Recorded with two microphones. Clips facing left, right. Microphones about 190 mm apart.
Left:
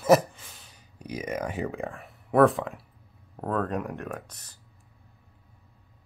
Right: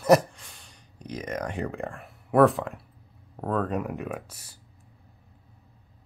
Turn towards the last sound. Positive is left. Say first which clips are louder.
# right 2 dB
turn(degrees=-10)  # may be behind; listen again after turning